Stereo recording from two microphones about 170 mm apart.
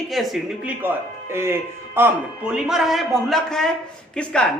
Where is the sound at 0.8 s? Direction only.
15° right (ahead or behind); by 4.5 s 5° left (ahead or behind).